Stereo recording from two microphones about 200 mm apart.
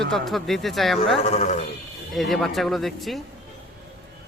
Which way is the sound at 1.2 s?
35° left (ahead or behind).